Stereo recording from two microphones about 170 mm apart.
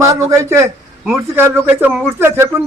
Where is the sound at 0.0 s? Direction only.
20° right (ahead or behind).